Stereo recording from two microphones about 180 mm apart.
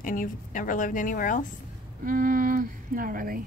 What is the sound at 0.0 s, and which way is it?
A woman's voice, 50° left (ahead or behind).